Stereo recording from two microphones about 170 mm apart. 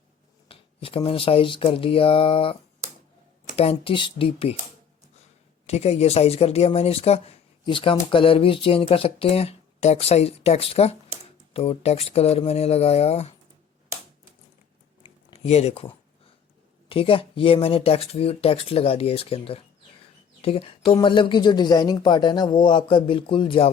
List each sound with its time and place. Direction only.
0.4 s speech: 30° left (ahead or behind)
5.6 s speech: 35° left (ahead or behind)
15.0 s a sound: 35° left (ahead or behind)
16.9 s speech: 30° left (ahead or behind)